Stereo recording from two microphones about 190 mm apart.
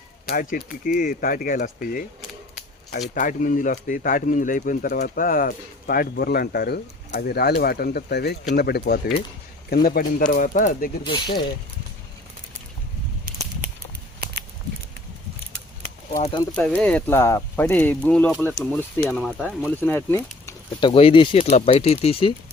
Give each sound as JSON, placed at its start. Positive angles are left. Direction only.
{"t": 0.3, "sound": "speech", "side_deg": 50}
{"t": 3.2, "sound": "speech", "side_deg": 45}
{"t": 11.0, "sound": "speech", "side_deg": 25}
{"t": 13.2, "sound": "a sound", "side_deg": -45}
{"t": 16.6, "sound": "speech", "side_deg": 5}
{"t": 19.3, "sound": "speech", "side_deg": -5}
{"t": 19.8, "sound": "speech", "side_deg": 10}
{"t": 20.8, "sound": "speech", "side_deg": 30}